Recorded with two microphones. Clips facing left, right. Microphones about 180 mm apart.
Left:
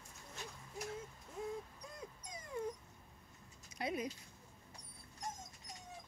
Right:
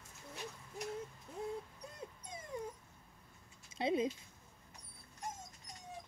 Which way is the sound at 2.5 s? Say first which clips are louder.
Left 2 dB; 20° right (ahead or behind).